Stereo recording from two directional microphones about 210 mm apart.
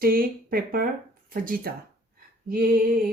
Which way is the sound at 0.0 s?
45° right (ahead or behind).